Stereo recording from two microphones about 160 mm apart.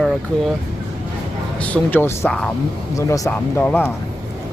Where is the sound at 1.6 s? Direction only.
10° left (ahead or behind).